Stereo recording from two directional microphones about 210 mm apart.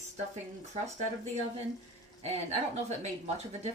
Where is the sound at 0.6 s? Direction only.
35° right (ahead or behind).